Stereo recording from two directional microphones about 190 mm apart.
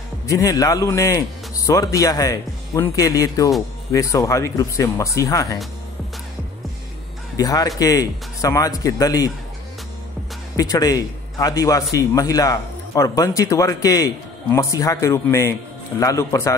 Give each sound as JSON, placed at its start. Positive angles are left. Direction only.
{"t": 0.3, "sound": "a man's voice", "side_deg": 15}
{"t": 7.3, "sound": "a man's voice", "side_deg": 20}
{"t": 10.5, "sound": "a man's voice", "side_deg": 20}